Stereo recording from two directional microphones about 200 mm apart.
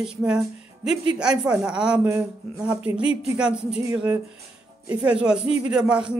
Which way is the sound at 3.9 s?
15° right (ahead or behind).